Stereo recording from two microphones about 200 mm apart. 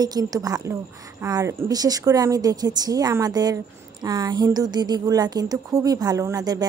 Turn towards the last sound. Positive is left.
turn(degrees=-20)  # may be behind; listen again after turning